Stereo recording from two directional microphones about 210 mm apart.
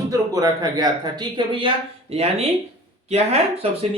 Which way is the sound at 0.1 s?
15° right (ahead or behind).